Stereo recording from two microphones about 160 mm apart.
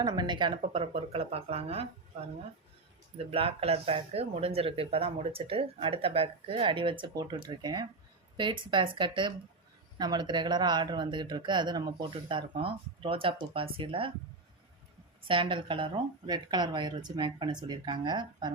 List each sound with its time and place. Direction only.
0.0 s speech: 25° right (ahead or behind)
3.2 s speech: 35° right (ahead or behind)
15.3 s speech: 30° right (ahead or behind)